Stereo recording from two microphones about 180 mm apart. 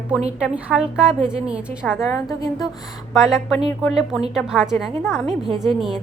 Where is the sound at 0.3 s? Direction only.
5° right (ahead or behind).